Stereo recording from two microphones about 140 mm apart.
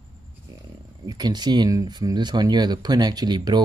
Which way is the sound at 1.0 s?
30° right (ahead or behind).